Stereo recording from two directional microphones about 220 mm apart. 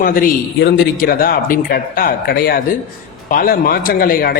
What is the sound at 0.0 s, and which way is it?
A man's voice, 40° left (ahead or behind).